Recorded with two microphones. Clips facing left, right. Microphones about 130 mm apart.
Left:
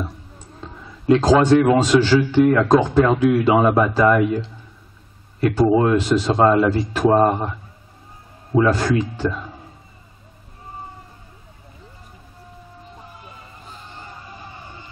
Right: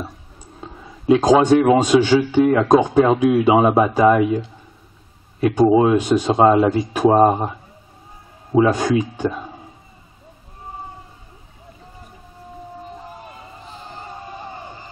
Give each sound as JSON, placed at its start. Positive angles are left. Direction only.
{"t": 0.7, "sound": "speech", "side_deg": -15}
{"t": 14.5, "sound": "music", "side_deg": -35}